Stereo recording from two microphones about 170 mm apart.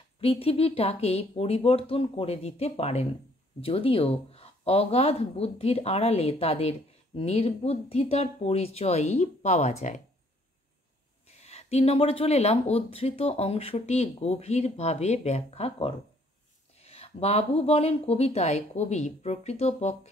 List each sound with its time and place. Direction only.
0.2 s speech: 35° left (ahead or behind)
11.2 s speech: 40° left (ahead or behind)